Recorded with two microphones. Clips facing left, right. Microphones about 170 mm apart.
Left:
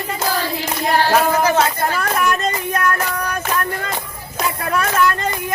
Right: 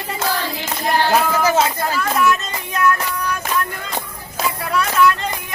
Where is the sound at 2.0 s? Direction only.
55° left (ahead or behind).